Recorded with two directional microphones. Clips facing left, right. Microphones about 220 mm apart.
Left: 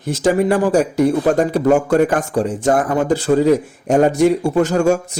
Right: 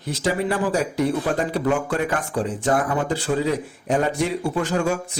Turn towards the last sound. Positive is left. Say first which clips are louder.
# left 7 dB
turn(degrees=45)  # may be behind; listen again after turning